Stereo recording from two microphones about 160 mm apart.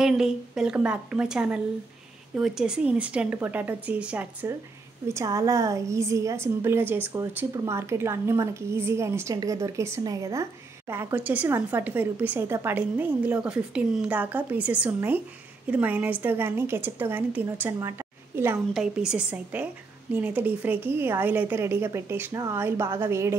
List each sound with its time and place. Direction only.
0.0 s a woman's voice: 5° right (ahead or behind)
17.7 s a sound: 15° right (ahead or behind)
18.7 s a woman's voice: 5° right (ahead or behind)